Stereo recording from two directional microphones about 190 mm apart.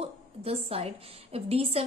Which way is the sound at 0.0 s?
30° right (ahead or behind).